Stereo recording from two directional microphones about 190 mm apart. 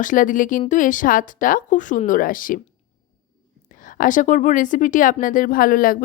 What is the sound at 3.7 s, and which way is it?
A woman's voice, 45° left (ahead or behind).